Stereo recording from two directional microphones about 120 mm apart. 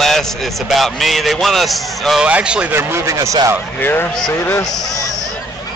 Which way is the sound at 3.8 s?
15° left (ahead or behind).